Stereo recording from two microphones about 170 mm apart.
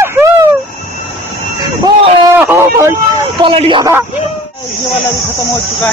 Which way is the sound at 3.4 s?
30° right (ahead or behind).